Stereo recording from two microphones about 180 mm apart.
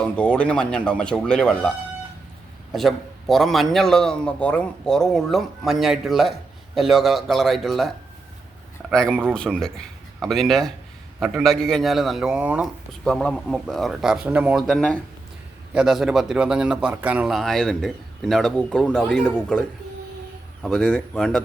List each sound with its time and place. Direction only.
0.0 s a man's voice: 5° left (ahead or behind)
2.7 s a man's voice: centre (ahead or behind)
13.1 s a man's voice: 5° left (ahead or behind)